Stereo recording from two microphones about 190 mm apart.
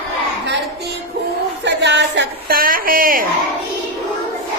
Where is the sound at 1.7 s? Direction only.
65° right (ahead or behind); by 3.2 s 50° right (ahead or behind).